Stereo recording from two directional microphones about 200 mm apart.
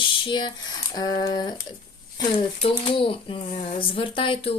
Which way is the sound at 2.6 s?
25° left (ahead or behind).